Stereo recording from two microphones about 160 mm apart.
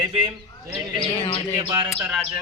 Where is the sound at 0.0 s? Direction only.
35° right (ahead or behind).